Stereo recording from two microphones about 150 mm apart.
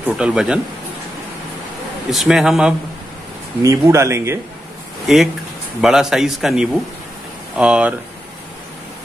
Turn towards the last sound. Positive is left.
turn(degrees=-5)  # may be behind; listen again after turning